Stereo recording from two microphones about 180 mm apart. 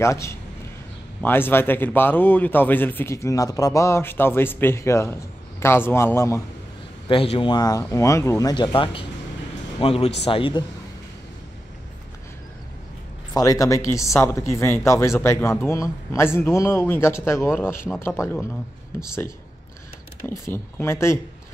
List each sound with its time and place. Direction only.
0.0 s speech: 15° left (ahead or behind)
7.1 s speech: 30° left (ahead or behind)
13.3 s speech: 20° left (ahead or behind)